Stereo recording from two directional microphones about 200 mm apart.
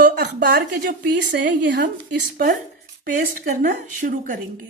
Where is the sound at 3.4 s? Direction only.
45° right (ahead or behind).